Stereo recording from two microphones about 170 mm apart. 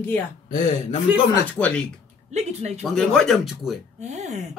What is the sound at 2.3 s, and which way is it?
Speech, 40° right (ahead or behind).